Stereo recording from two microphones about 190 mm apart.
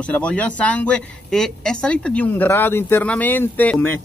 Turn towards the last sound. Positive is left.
turn(degrees=10)  # may be behind; listen again after turning